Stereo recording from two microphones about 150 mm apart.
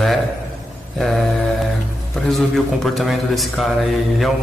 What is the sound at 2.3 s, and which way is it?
A man's voice, centre (ahead or behind).